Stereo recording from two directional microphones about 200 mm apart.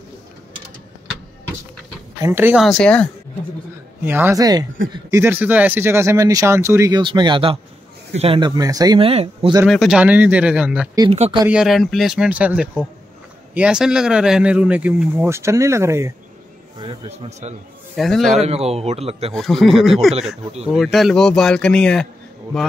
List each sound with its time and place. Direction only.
2.2 s speech: 10° right (ahead or behind)
2.6 s speech: 5° left (ahead or behind)
4.0 s speech: 10° right (ahead or behind); by 9.5 s 30° right (ahead or behind)
9.7 s speech: centre (ahead or behind)
11.0 s speech: 30° right (ahead or behind)
11.4 s speech: 5° right (ahead or behind)
16.7 s speech: 25° right (ahead or behind)
17.9 s speech: centre (ahead or behind)
18.4 s a man's voice: 30° right (ahead or behind)
19.3 s speech: centre (ahead or behind)